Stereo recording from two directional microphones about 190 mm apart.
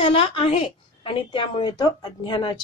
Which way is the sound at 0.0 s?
30° left (ahead or behind).